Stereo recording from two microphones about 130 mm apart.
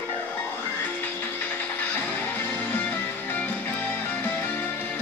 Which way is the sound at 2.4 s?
10° left (ahead or behind).